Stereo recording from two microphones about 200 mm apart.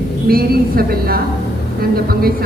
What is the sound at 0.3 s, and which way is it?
A man's voice, 50° right (ahead or behind).